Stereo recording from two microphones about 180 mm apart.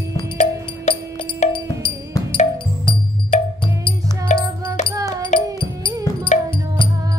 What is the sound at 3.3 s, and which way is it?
Music, 40° left (ahead or behind).